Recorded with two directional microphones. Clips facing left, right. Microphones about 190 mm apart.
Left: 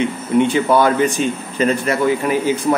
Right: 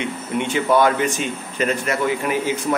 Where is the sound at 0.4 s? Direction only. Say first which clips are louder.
Left 3 dB; 35° left (ahead or behind).